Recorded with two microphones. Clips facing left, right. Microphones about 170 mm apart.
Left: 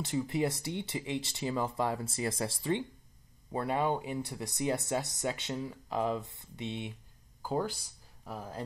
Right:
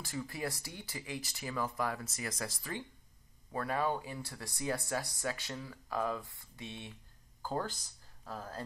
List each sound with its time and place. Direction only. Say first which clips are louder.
0.0 s speech: left 8 dB; 20° left (ahead or behind)